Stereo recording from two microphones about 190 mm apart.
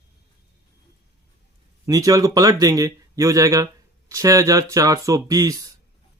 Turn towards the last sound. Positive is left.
turn(degrees=-15)  # may be behind; listen again after turning